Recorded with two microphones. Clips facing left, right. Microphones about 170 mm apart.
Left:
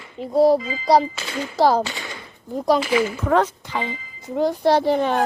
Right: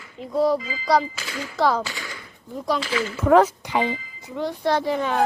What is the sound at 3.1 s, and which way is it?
Speech, 5° right (ahead or behind).